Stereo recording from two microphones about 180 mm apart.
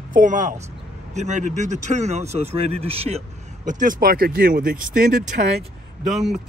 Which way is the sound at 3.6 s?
50° right (ahead or behind).